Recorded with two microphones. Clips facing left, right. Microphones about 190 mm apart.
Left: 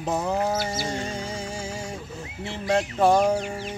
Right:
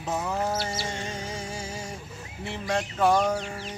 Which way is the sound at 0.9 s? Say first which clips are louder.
Left 4 dB; 35° left (ahead or behind).